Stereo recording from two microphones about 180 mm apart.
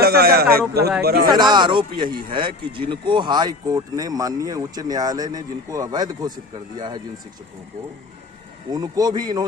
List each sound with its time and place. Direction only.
0.0 s speech: 60° right (ahead or behind)
1.3 s speech: 25° right (ahead or behind)
8.7 s speech: 20° right (ahead or behind)